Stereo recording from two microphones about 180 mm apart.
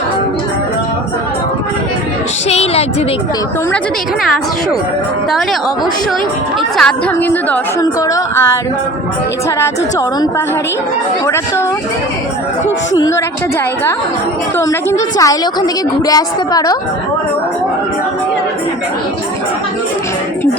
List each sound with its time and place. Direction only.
2.5 s a sound: 35° left (ahead or behind)
6.7 s a woman's voice: 5° left (ahead or behind)
12.9 s a woman's voice: 15° left (ahead or behind)
14.6 s a woman's voice: 15° left (ahead or behind)